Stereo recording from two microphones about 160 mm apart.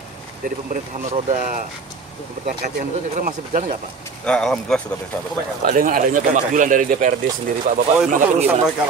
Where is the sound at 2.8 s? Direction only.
55° right (ahead or behind).